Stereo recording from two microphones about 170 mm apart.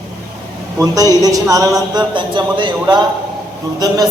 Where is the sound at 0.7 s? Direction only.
20° right (ahead or behind).